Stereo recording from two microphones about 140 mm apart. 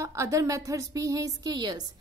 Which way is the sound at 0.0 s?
20° right (ahead or behind).